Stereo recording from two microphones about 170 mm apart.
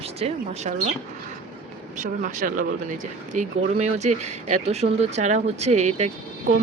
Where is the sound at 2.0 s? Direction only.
50° right (ahead or behind).